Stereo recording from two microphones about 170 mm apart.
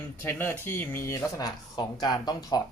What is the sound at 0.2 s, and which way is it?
Speech, 15° left (ahead or behind).